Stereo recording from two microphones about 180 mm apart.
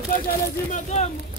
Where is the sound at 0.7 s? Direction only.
40° left (ahead or behind).